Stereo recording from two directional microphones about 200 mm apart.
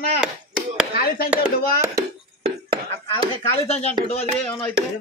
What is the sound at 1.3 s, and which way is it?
Speech, 10° right (ahead or behind).